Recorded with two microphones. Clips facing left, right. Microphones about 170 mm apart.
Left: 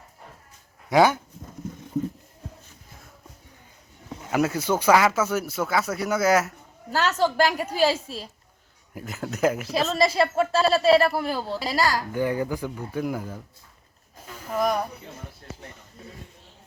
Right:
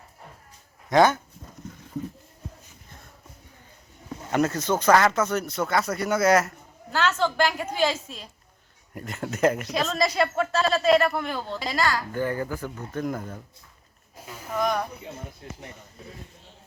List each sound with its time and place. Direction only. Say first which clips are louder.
0.9 s speech: even; 10° left (ahead or behind)
4.3 s speech: even; 5° left (ahead or behind)
6.9 s speech: left 2 dB; 40° left (ahead or behind)
9.0 s speech: right 1 dB; centre (ahead or behind)
10.0 s a woman's voice: left 3 dB; 30° left (ahead or behind)
11.3 s speech: left 3 dB; 5° left (ahead or behind)
11.6 s speech: left 1 dB; 35° left (ahead or behind)
12.1 s speech: left 2 dB; 15° left (ahead or behind)
14.5 s a sound: left 2 dB; 10° left (ahead or behind)